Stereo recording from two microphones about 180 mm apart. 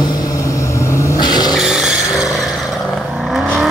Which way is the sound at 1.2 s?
25° left (ahead or behind).